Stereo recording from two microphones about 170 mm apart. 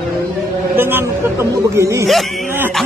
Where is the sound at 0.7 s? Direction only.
10° right (ahead or behind).